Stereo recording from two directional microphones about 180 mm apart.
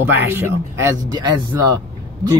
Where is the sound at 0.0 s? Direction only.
10° right (ahead or behind).